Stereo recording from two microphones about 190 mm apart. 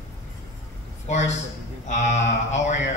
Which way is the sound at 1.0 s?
35° left (ahead or behind).